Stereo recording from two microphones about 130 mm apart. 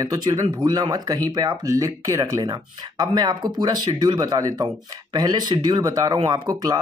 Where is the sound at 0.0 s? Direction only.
30° right (ahead or behind).